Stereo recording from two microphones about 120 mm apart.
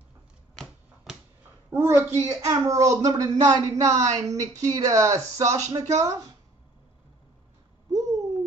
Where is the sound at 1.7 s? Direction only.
20° right (ahead or behind).